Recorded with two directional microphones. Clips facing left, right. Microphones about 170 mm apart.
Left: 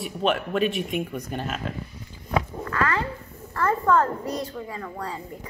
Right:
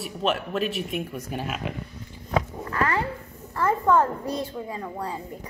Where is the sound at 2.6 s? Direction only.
25° right (ahead or behind).